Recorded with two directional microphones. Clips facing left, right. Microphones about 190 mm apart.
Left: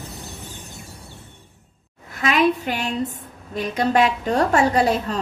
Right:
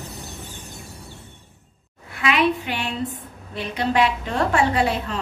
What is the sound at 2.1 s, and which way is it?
A woman's voice, 40° left (ahead or behind).